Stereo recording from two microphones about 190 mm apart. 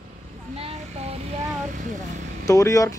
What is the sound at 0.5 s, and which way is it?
Vehicle, 35° right (ahead or behind).